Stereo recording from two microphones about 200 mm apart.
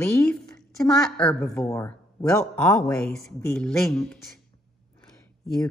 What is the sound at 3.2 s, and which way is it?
Speech, 5° left (ahead or behind).